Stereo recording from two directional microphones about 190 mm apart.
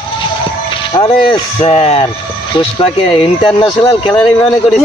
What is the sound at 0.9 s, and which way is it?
Speech, 30° left (ahead or behind).